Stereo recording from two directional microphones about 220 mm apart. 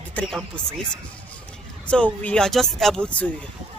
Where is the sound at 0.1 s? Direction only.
5° left (ahead or behind).